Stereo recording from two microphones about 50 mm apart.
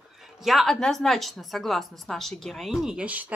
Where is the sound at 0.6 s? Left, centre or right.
Centre.